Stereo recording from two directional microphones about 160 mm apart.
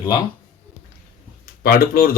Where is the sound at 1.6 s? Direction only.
70° left (ahead or behind).